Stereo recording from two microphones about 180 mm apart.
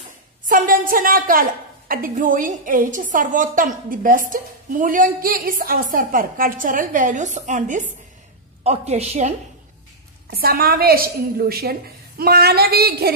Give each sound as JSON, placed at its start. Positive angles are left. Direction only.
{"t": 0.5, "sound": "a woman's voice", "side_deg": -50}
{"t": 10.3, "sound": "a woman's voice", "side_deg": -60}